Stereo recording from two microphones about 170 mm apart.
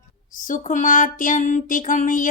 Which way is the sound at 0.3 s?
50° left (ahead or behind).